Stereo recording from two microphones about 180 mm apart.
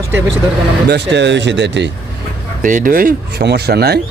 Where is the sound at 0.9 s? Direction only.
75° right (ahead or behind).